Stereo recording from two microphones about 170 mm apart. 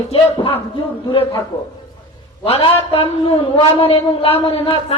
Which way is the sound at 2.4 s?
35° left (ahead or behind).